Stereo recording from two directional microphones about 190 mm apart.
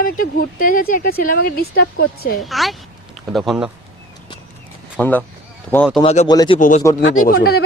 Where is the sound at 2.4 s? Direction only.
Centre (ahead or behind).